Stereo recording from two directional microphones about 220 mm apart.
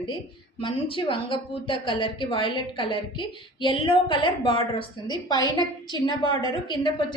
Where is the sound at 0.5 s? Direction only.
25° left (ahead or behind).